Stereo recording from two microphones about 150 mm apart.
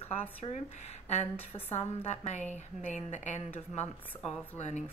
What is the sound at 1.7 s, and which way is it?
Speech, 45° left (ahead or behind).